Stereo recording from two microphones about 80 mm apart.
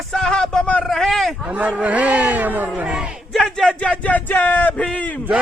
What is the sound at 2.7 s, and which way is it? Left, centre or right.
Battle cry, centre.